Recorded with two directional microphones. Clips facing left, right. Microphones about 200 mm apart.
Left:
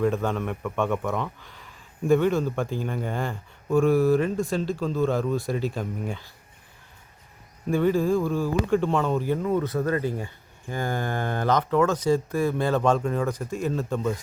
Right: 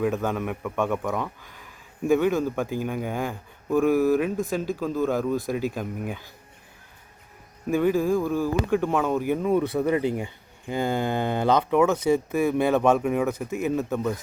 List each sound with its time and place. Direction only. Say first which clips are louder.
0.0 s speech: left 1 dB; centre (ahead or behind)
5.0 s speech: even; 5° right (ahead or behind)
7.7 s speech: even; 10° right (ahead or behind)
12.8 s speech: right 2 dB; 10° right (ahead or behind)